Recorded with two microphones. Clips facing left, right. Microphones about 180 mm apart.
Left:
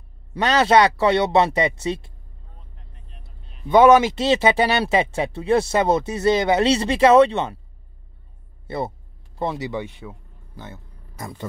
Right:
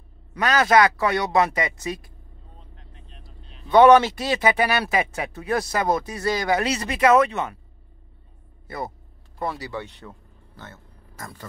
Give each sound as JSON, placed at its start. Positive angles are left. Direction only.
{"t": 0.3, "sound": "speech", "side_deg": 30}
{"t": 3.7, "sound": "speech", "side_deg": 10}
{"t": 4.1, "sound": "speech", "side_deg": 25}
{"t": 8.6, "sound": "speech", "side_deg": 25}